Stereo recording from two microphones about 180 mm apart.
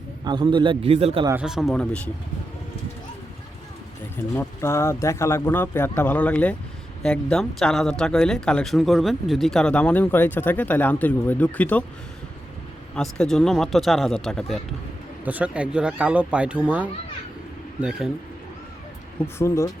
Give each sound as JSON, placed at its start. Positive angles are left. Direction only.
{"t": 0.3, "sound": "a man's voice", "side_deg": -25}
{"t": 1.4, "sound": "speech", "side_deg": -5}
{"t": 4.4, "sound": "speech", "side_deg": 15}
{"t": 13.0, "sound": "speech", "side_deg": 0}
{"t": 15.2, "sound": "speech", "side_deg": -10}
{"t": 19.2, "sound": "speech", "side_deg": 15}